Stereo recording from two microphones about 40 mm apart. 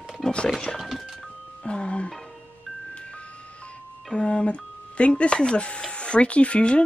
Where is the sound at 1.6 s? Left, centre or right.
Left.